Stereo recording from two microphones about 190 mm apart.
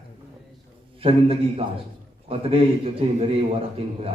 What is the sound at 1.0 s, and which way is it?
A man's voice, 30° right (ahead or behind).